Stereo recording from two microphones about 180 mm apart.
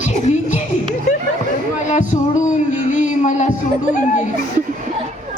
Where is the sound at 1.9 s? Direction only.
40° left (ahead or behind).